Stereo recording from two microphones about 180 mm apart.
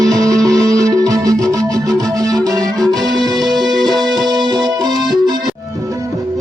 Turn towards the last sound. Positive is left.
turn(degrees=-20)  # may be behind; listen again after turning